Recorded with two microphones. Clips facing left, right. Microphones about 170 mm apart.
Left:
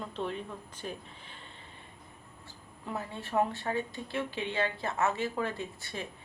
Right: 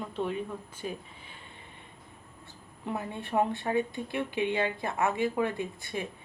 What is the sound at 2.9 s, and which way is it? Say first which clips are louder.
Speech: right 3 dB; 20° right (ahead or behind).